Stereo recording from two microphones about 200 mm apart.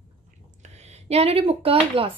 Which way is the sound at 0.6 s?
35° right (ahead or behind).